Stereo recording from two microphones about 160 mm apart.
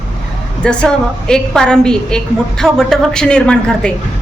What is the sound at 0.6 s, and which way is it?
A woman's voice, 5° left (ahead or behind).